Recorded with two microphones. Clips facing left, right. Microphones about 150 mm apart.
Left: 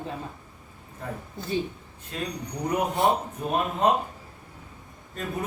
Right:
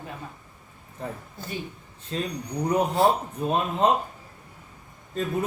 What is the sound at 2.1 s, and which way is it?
Speech, 30° right (ahead or behind).